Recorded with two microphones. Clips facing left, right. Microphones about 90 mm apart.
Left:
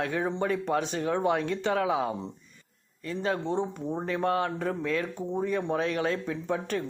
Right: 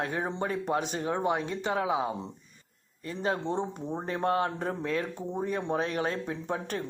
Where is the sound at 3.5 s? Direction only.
20° right (ahead or behind).